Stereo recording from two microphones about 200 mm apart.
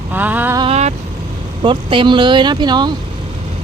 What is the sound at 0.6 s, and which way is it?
Vehicle, 30° right (ahead or behind).